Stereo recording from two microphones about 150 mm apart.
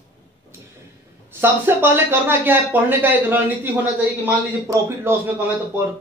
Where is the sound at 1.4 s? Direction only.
15° right (ahead or behind).